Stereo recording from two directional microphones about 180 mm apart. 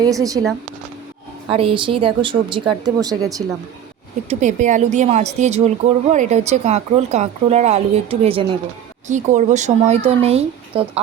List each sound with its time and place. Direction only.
0.0 s speech: 20° right (ahead or behind)
1.5 s speech: 30° right (ahead or behind)
4.3 s a woman's voice: 40° right (ahead or behind)
9.0 s a woman's voice: 40° right (ahead or behind)